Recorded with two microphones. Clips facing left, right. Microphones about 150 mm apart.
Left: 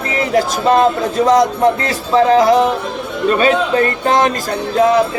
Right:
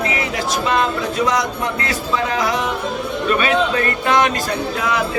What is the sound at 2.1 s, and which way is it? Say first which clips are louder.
Music: left 11 dB; 35° left (ahead or behind).